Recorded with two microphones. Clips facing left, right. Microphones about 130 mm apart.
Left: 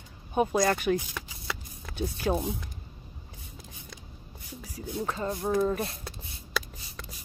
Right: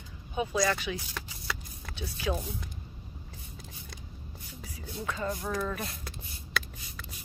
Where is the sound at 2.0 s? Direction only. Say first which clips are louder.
Left 4 dB; 45° left (ahead or behind).